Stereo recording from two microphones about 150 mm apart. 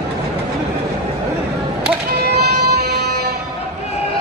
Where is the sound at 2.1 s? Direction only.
90° right.